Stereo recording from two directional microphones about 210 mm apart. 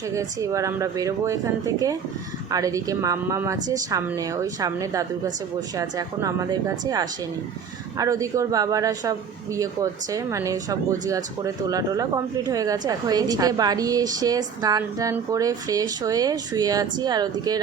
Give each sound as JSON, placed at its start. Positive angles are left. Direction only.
{"t": 0.1, "sound": "speech", "side_deg": -15}